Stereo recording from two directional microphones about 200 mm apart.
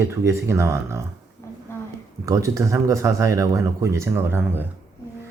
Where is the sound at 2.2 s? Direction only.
15° right (ahead or behind).